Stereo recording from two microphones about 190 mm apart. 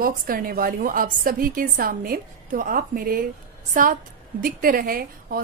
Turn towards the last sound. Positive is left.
turn(degrees=-50)  # may be behind; listen again after turning